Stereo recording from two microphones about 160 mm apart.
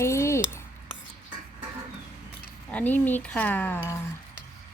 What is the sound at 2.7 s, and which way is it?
Speech, 10° left (ahead or behind).